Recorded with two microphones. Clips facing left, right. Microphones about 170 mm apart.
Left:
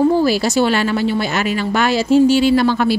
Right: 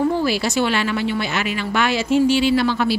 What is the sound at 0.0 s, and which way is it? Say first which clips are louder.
A woman's voice: left 5 dB; 35° left (ahead or behind).